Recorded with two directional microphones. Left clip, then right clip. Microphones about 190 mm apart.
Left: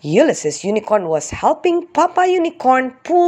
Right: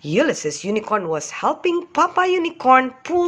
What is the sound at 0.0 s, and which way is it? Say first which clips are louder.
Speech: left 5 dB; 20° left (ahead or behind).